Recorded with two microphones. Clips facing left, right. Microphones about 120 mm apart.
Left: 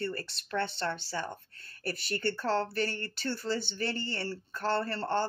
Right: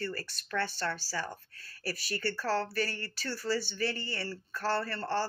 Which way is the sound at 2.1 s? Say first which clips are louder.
Left 2 dB; 25° left (ahead or behind).